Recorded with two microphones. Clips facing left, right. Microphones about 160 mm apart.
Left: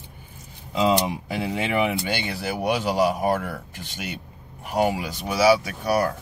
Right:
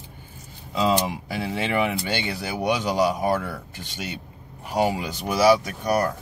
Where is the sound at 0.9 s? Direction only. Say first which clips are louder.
Left 1 dB; 15° left (ahead or behind).